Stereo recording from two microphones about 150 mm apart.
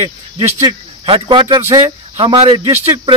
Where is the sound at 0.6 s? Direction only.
35° right (ahead or behind).